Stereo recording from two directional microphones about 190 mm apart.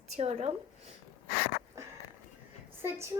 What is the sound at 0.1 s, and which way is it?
Speech, 35° right (ahead or behind).